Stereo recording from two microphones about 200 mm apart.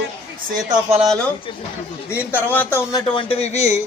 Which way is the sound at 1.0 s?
5° left (ahead or behind).